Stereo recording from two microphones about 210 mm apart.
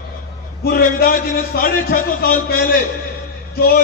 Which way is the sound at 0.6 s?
45° left (ahead or behind).